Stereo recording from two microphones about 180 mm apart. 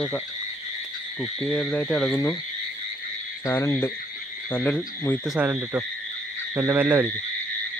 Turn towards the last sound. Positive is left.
turn(degrees=-10)  # may be behind; listen again after turning